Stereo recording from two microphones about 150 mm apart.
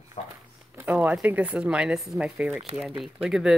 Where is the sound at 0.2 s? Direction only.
50° left (ahead or behind).